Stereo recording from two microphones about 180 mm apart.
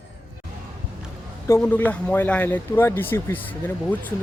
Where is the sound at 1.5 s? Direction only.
10° left (ahead or behind).